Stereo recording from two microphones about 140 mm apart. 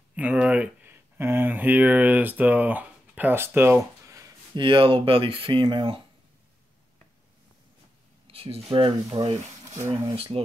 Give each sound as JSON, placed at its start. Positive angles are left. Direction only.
{"t": 0.1, "sound": "a sound", "side_deg": -10}
{"t": 4.6, "sound": "speech", "side_deg": -35}
{"t": 8.3, "sound": "speech", "side_deg": -45}